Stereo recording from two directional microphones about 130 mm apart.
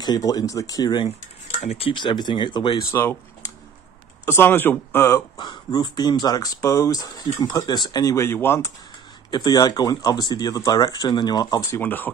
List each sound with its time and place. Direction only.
0.0 s speech: 30° left (ahead or behind)
1.6 s speech: 50° left (ahead or behind); by 2.8 s 35° left (ahead or behind)
2.9 s speech: 20° left (ahead or behind)
5.4 s speech: 35° left (ahead or behind); by 8.7 s 20° left (ahead or behind)
9.3 s speech: 30° left (ahead or behind)
11.8 s speech: 15° left (ahead or behind)